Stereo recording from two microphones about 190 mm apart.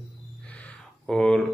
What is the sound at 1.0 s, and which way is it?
Speech, 5° left (ahead or behind).